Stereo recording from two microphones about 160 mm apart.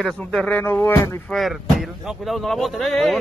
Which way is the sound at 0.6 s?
15° left (ahead or behind).